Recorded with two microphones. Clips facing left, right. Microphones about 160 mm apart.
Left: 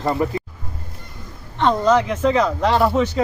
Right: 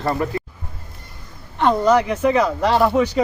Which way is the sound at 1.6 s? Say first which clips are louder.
Right 1 dB; 10° right (ahead or behind).